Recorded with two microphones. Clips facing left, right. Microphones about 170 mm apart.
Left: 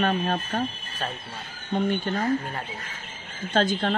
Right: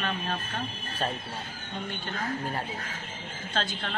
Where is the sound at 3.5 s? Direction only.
45° left (ahead or behind).